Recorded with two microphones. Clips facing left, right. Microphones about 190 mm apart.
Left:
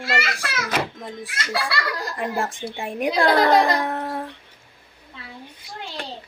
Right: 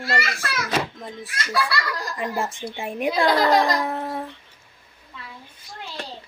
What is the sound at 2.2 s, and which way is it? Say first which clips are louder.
A child's voice: left 1 dB; centre (ahead or behind).